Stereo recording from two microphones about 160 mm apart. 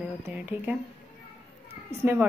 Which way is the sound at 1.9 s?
15° right (ahead or behind).